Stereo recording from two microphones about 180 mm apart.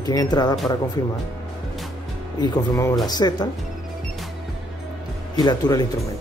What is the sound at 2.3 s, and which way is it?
Speech, 20° left (ahead or behind).